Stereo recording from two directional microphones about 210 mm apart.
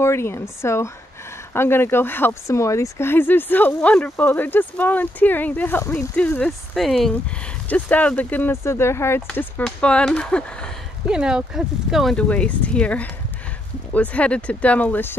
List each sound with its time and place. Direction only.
0.0 s speech: 10° left (ahead or behind)